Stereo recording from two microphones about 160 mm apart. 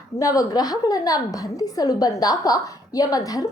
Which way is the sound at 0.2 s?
20° left (ahead or behind).